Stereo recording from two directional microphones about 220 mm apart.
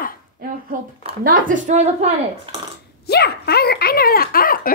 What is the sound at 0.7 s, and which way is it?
A woman's voice, 35° right (ahead or behind).